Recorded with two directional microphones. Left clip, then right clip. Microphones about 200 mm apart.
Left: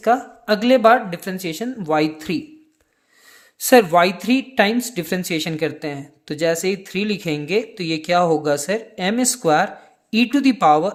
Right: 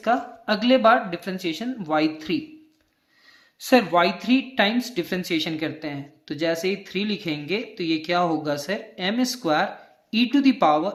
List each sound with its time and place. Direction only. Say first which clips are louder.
0.0 s speech: left 5 dB; 40° left (ahead or behind)
3.6 s speech: left 6 dB; 45° left (ahead or behind)